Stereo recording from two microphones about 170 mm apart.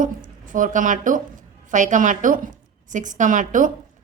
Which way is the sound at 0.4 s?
50° right (ahead or behind).